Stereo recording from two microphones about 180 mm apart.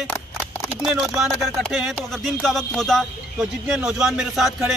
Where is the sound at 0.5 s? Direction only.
15° left (ahead or behind).